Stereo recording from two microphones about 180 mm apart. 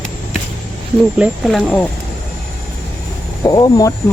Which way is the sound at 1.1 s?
5° right (ahead or behind).